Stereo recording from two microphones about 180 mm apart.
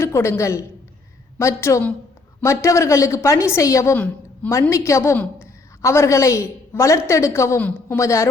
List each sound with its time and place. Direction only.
0.0 s a woman's voice: 15° left (ahead or behind)